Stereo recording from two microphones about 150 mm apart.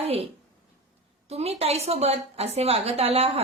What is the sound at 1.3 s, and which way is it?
A woman's voice, 45° right (ahead or behind).